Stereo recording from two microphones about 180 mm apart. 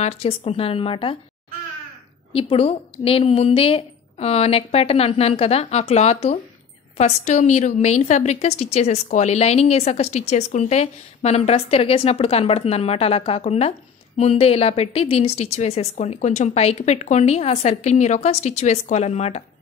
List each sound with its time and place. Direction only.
0.0 s a woman's voice: 35° left (ahead or behind)
2.5 s a woman's voice: 35° left (ahead or behind)